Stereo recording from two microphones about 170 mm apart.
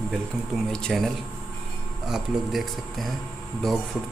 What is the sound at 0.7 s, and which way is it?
Speech, 5° left (ahead or behind).